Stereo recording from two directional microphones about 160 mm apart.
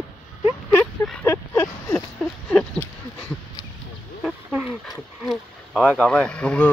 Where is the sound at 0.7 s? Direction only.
Centre (ahead or behind).